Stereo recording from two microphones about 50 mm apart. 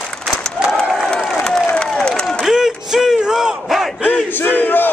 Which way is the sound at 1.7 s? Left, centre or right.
Centre.